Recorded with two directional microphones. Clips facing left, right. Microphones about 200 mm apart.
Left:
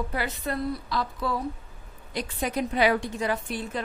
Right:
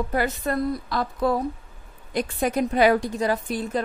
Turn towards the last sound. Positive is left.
turn(degrees=-40)  # may be behind; listen again after turning